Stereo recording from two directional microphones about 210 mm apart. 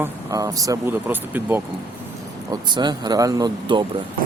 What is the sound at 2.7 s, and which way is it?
Speech, 20° right (ahead or behind).